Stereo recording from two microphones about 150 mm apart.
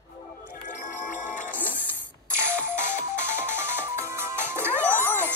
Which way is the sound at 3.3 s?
15° right (ahead or behind).